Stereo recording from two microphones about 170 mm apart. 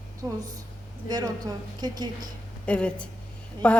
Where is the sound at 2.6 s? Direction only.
5° left (ahead or behind).